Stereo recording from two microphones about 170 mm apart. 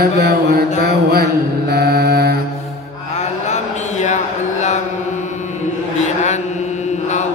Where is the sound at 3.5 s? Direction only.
45° left (ahead or behind).